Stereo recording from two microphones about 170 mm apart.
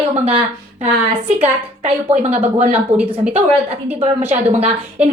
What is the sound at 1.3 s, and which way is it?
A woman's voice, 35° right (ahead or behind).